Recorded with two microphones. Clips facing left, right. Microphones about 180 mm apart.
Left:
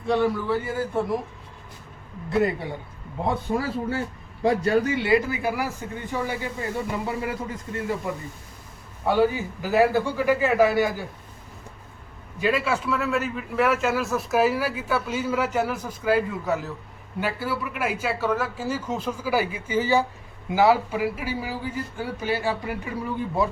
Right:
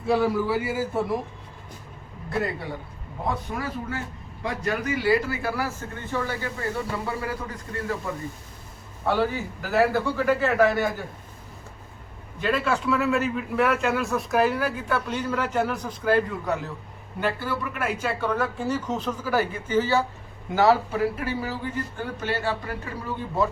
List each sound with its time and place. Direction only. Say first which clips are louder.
0.0 s a man's voice: even; 5° right (ahead or behind)
3.2 s a man's voice: left 4 dB; 30° left (ahead or behind)
9.0 s speech: left 3 dB; 15° left (ahead or behind)
12.4 s a man's voice: left 1 dB; 10° left (ahead or behind)